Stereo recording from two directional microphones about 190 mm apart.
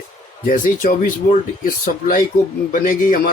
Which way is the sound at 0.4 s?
45° left (ahead or behind).